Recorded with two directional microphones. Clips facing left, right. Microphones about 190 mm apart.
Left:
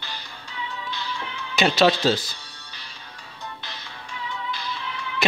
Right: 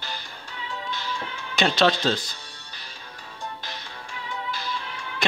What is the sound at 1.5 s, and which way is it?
Speech, 5° left (ahead or behind).